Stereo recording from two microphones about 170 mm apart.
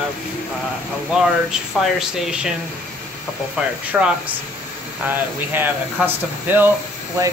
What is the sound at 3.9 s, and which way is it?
Speech, 10° right (ahead or behind).